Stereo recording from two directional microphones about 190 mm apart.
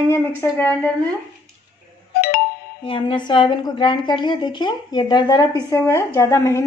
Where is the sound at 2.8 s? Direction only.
25° left (ahead or behind).